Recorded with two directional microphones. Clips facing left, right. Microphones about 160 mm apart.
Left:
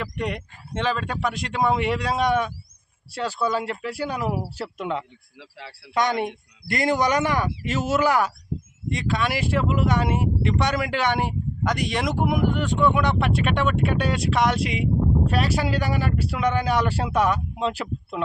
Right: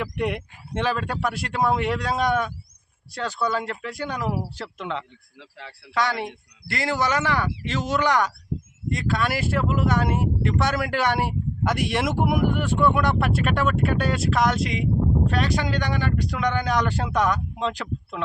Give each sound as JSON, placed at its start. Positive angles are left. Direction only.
{"t": 0.0, "sound": "speech", "side_deg": -5}
{"t": 5.9, "sound": "a man's voice", "side_deg": 20}